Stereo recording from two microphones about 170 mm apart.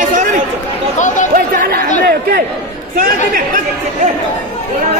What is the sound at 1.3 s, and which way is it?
A man's voice, 60° right (ahead or behind).